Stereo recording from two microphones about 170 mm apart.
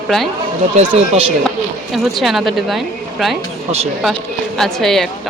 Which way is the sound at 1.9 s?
Centre (ahead or behind).